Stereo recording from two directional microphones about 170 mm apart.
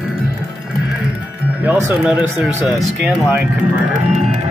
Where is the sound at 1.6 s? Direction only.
10° right (ahead or behind).